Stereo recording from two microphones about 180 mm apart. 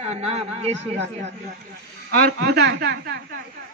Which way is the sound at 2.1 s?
60° right (ahead or behind).